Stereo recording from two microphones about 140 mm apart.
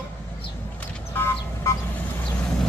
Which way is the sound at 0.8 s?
10° left (ahead or behind).